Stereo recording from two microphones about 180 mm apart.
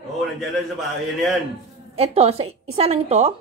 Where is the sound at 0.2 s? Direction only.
Centre (ahead or behind).